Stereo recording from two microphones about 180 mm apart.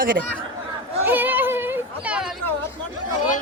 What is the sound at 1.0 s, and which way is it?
Chatter, 10° right (ahead or behind).